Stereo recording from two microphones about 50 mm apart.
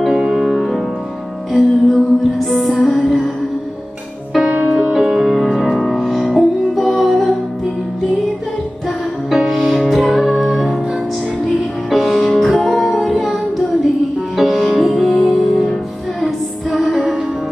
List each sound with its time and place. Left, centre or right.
0.0 s music: centre
4.6 s music: centre
4.9 s music: centre
9.3 s music: centre
11.9 s music: centre
14.3 s music: centre